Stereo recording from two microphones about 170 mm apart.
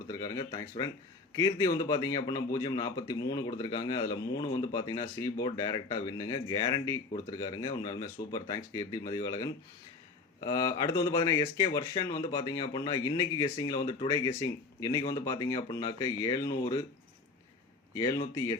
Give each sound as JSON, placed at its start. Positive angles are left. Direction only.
{"t": 0.1, "sound": "speech", "side_deg": 20}
{"t": 17.9, "sound": "speech", "side_deg": 20}